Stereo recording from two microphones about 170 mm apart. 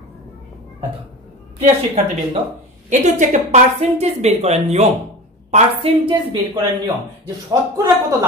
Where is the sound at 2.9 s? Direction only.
45° right (ahead or behind).